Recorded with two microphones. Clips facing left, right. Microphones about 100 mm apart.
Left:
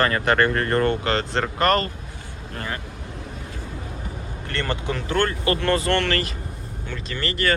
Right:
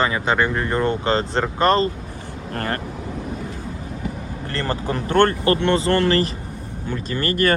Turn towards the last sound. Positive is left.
turn(degrees=-40)  # may be behind; listen again after turning